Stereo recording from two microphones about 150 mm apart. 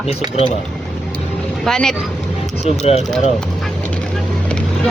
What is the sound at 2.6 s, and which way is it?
Speech, 45° left (ahead or behind).